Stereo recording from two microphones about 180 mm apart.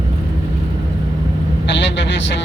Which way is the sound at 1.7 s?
75° left (ahead or behind).